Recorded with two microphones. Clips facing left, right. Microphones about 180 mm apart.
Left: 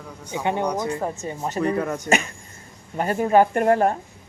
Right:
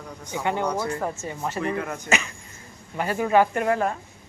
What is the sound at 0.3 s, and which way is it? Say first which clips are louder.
Speech: left 2 dB; 15° left (ahead or behind).